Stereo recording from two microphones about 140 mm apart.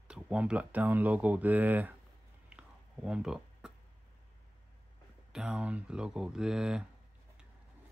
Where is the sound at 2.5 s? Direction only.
5° right (ahead or behind).